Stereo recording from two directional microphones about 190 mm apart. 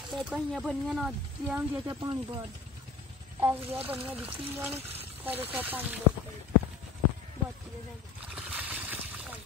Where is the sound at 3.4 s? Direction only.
10° right (ahead or behind).